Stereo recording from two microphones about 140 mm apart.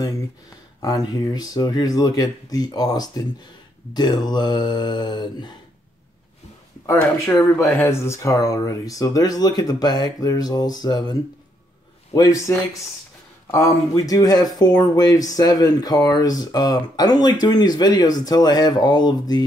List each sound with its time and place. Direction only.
0.8 s speech: 25° left (ahead or behind)
6.9 s speech: 20° left (ahead or behind)